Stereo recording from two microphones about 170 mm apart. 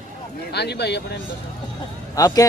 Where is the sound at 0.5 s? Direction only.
75° left (ahead or behind).